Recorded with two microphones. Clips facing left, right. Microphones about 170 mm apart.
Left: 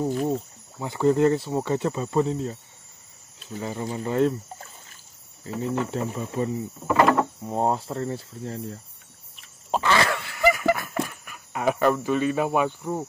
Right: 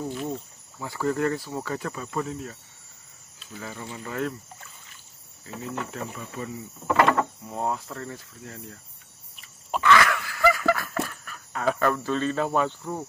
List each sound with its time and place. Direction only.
0.1 s speech: 45° left (ahead or behind)
0.7 s speech: 25° left (ahead or behind)
5.9 s cricket: 30° left (ahead or behind)
6.9 s a sound: centre (ahead or behind)
7.4 s cricket: 30° left (ahead or behind)
9.7 s a sound: 30° left (ahead or behind); by 13.0 s 15° left (ahead or behind)